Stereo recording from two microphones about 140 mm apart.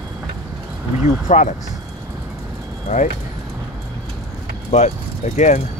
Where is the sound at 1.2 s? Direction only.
65° left (ahead or behind).